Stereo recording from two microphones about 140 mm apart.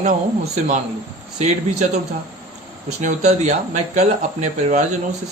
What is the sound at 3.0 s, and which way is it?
Speech, 55° right (ahead or behind).